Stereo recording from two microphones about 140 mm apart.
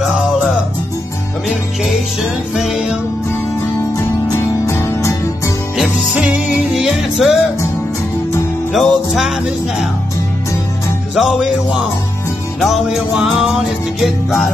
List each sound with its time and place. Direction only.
2.5 s music: 5° right (ahead or behind)
4.6 s music: 20° left (ahead or behind)
5.8 s music: 5° right (ahead or behind)
8.7 s music: centre (ahead or behind)
11.1 s music: 5° right (ahead or behind)
12.5 s music: centre (ahead or behind)